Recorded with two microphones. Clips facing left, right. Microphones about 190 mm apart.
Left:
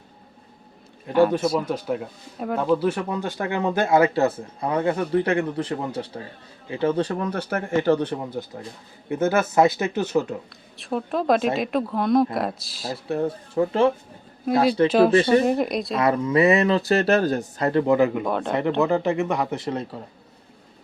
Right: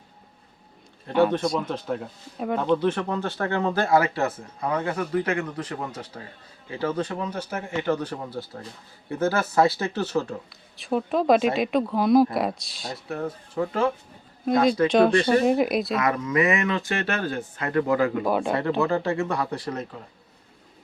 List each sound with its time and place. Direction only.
1.0 s speech: 5° left (ahead or behind); by 7.2 s 35° left (ahead or behind)
7.2 s speech: 60° left (ahead or behind); by 7.9 s 45° left (ahead or behind)
7.9 s speech: 25° left (ahead or behind)
10.8 s speech: centre (ahead or behind)
13.1 s speech: 30° left (ahead or behind)
14.8 s speech: 5° left (ahead or behind)
16.0 s speech: 30° left (ahead or behind)
18.2 s speech: 5° right (ahead or behind)
18.8 s speech: 20° left (ahead or behind)